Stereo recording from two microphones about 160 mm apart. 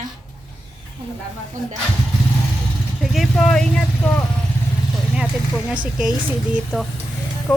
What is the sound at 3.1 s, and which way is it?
Speech, centre (ahead or behind).